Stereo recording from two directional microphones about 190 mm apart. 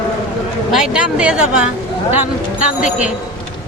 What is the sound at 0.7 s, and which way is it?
Speech, 5° right (ahead or behind).